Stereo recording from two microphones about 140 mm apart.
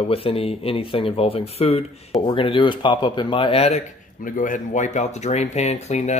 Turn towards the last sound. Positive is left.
turn(degrees=50)  # may be behind; listen again after turning